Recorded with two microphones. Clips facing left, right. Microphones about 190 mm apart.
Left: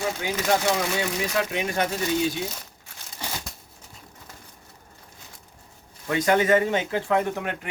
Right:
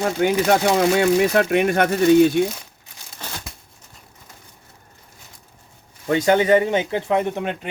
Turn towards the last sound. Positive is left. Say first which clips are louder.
# right 3 dB
turn(degrees=-25)  # may be behind; listen again after turning